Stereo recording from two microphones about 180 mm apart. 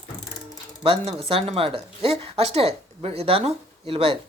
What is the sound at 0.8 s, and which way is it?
Speech, 30° right (ahead or behind).